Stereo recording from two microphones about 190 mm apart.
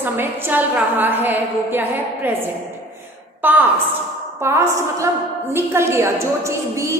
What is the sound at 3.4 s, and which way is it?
A woman's voice, 10° right (ahead or behind).